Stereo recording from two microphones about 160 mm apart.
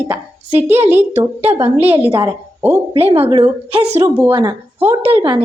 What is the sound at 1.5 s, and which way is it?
Speech, 35° right (ahead or behind).